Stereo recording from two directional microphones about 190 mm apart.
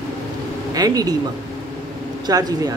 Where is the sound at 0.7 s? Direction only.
20° right (ahead or behind).